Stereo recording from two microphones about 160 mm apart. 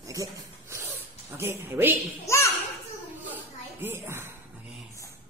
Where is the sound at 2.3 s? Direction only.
15° left (ahead or behind).